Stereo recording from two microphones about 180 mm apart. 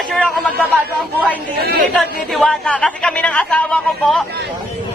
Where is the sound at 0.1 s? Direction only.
5° left (ahead or behind).